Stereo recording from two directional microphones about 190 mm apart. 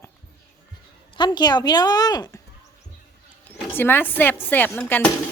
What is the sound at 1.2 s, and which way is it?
A woman's voice, 25° left (ahead or behind).